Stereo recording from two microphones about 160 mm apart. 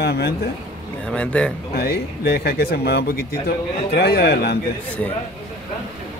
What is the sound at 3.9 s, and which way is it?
Speech, 90° left.